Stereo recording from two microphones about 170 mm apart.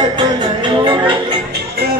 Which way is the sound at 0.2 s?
25° right (ahead or behind).